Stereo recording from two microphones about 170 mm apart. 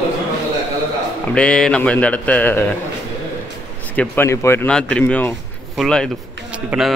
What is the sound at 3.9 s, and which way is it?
A man's voice, 15° left (ahead or behind).